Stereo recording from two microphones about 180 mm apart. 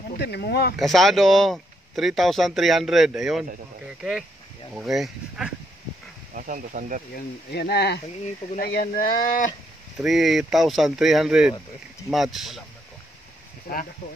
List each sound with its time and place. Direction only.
0.2 s speech: 65° left (ahead or behind)
0.7 s speech: centre (ahead or behind)
6.3 s speech: 45° right (ahead or behind)
7.2 s speech: 60° left (ahead or behind)
9.9 s speech: centre (ahead or behind)
13.7 s speech: 55° left (ahead or behind)